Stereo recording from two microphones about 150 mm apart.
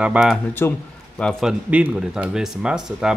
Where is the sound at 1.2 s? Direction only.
5° left (ahead or behind).